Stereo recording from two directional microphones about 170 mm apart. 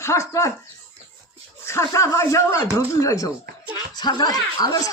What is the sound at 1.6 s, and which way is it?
Speech, 15° left (ahead or behind).